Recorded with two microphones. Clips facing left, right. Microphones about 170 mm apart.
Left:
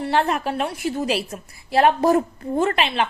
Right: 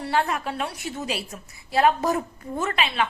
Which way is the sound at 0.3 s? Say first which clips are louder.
Left 5 dB; 60° left (ahead or behind).